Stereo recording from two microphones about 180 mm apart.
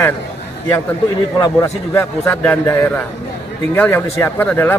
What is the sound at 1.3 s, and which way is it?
Speech, 15° left (ahead or behind).